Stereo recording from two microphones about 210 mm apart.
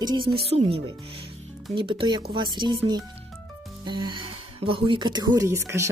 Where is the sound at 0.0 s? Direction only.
20° right (ahead or behind).